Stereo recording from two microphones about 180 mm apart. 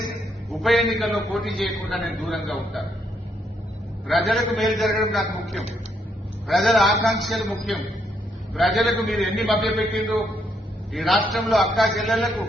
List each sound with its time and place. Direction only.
0.6 s a man's voice: centre (ahead or behind)
4.3 s a man's voice: centre (ahead or behind)